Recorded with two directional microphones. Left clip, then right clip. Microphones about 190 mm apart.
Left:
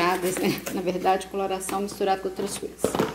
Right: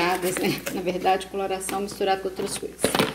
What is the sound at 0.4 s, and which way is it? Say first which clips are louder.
A woman's voice: even; centre (ahead or behind).